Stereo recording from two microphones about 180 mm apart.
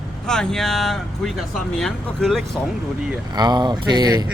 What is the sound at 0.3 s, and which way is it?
Speech, 5° left (ahead or behind).